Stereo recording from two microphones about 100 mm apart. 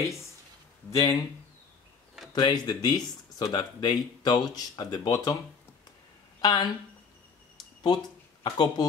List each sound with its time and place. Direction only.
0.9 s speech: 35° left (ahead or behind)
2.3 s speech: 45° left (ahead or behind)
6.4 s speech: 45° left (ahead or behind)
8.5 s speech: 50° left (ahead or behind)